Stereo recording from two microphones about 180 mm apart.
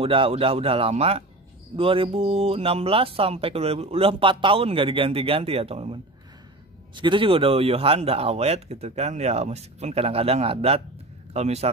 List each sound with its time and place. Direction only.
0.0 s speech: 30° right (ahead or behind)
7.0 s speech: 25° right (ahead or behind)